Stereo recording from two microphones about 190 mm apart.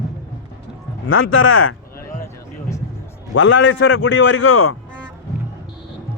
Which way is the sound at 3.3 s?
90° left.